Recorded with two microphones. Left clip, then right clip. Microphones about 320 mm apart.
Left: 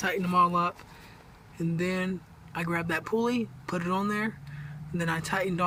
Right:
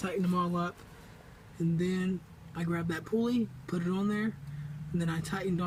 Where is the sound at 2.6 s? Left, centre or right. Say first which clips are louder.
Left 6 dB; centre.